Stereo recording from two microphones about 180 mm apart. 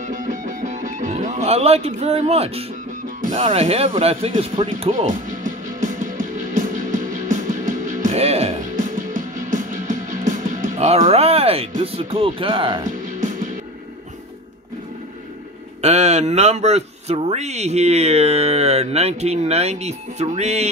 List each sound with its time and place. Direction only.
0.0 s music: 45° right (ahead or behind)
11.8 s speech: 30° right (ahead or behind)
15.8 s speech: 35° right (ahead or behind)